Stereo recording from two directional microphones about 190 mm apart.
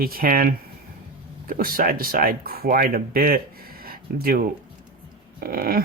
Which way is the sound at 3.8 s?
50° right (ahead or behind).